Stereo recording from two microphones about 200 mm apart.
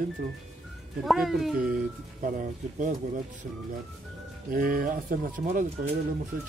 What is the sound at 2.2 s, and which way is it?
Speech, 40° right (ahead or behind).